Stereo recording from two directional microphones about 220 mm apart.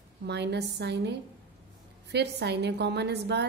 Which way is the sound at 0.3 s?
50° right (ahead or behind).